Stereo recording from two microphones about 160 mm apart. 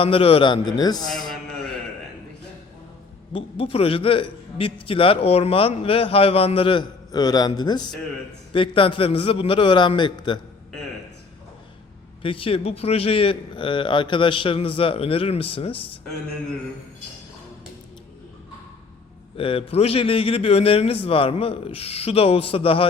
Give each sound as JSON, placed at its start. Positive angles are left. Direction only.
{"t": 0.0, "sound": "a man's voice", "side_deg": 35}
{"t": 3.3, "sound": "a man's voice", "side_deg": 35}
{"t": 12.2, "sound": "a man's voice", "side_deg": 35}
{"t": 19.4, "sound": "a man's voice", "side_deg": 35}